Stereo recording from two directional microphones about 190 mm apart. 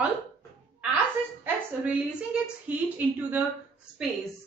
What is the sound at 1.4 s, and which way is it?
A woman's voice, 5° right (ahead or behind).